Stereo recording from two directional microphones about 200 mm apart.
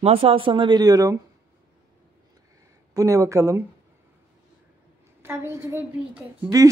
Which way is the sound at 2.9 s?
15° right (ahead or behind).